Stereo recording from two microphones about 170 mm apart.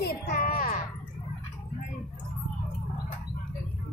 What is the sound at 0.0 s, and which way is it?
Music, 60° left (ahead or behind).